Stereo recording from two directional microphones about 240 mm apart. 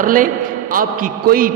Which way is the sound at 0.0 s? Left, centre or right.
Right.